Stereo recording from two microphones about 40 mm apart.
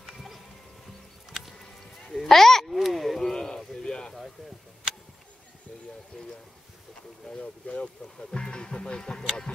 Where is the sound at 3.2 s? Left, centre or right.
Centre.